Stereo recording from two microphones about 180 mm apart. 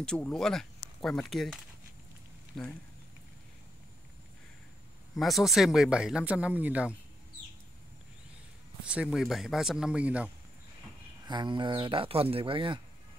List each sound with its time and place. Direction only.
0.0 s speech: 5° left (ahead or behind)
5.1 s speech: centre (ahead or behind)
8.8 s speech: 5° right (ahead or behind)
11.2 s speech: 25° right (ahead or behind)